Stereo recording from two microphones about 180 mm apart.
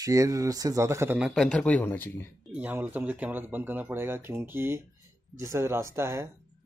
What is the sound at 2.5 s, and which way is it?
Speech, 10° right (ahead or behind).